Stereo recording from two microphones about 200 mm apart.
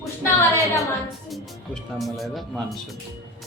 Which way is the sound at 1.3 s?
Centre (ahead or behind).